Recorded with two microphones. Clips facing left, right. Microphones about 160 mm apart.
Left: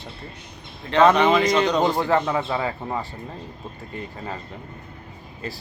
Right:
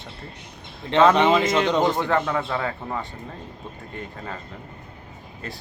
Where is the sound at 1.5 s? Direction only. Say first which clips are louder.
Left 1 dB; centre (ahead or behind).